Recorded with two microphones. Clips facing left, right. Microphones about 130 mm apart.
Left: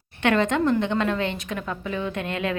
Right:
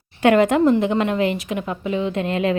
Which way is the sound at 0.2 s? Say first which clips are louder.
Right 6 dB; 35° right (ahead or behind).